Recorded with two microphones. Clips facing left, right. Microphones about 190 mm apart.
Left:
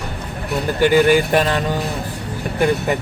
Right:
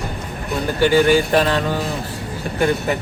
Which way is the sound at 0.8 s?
15° left (ahead or behind).